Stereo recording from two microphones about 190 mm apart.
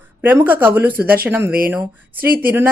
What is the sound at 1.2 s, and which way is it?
Speech, 10° right (ahead or behind).